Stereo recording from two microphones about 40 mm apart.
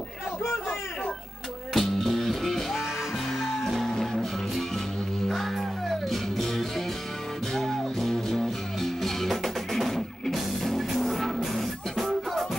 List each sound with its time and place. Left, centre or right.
1.7 s music: centre